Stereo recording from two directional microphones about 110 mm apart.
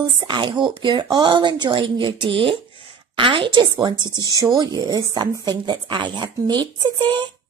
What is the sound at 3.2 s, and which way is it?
Speech, 50° right (ahead or behind).